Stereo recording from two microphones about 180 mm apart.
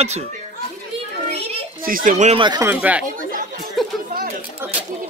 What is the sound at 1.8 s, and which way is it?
Speech, 50° right (ahead or behind).